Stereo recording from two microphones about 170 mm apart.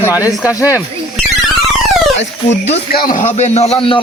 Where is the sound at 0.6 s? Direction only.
5° right (ahead or behind).